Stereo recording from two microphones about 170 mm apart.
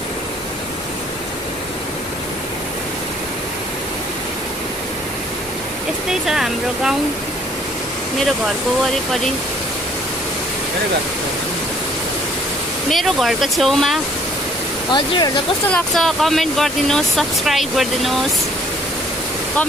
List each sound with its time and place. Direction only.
6.2 s speech: centre (ahead or behind)
12.9 s speech: centre (ahead or behind)
14.9 s speech: 25° left (ahead or behind)
15.7 s speech: centre (ahead or behind)